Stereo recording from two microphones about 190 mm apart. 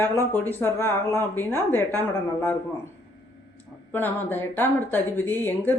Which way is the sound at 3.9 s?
10° left (ahead or behind).